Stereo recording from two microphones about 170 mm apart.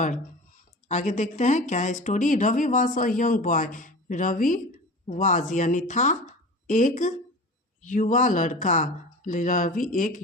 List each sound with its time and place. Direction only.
0.9 s speech: 45° left (ahead or behind)